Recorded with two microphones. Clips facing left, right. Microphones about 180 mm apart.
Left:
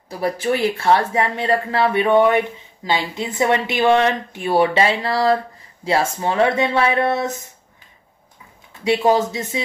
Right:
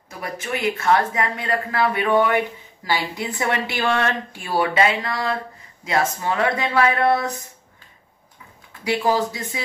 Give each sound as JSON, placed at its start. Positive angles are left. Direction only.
{"t": 0.1, "sound": "speech", "side_deg": 35}
{"t": 8.8, "sound": "speech", "side_deg": 25}